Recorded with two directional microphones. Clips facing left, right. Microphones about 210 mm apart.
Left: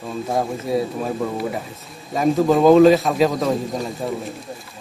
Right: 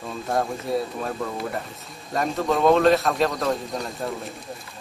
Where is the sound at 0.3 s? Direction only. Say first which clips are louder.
Left 2 dB; centre (ahead or behind).